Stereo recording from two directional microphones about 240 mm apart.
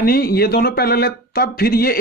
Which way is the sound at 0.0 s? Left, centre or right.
Left.